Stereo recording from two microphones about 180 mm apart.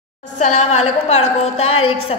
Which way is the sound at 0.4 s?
40° left (ahead or behind).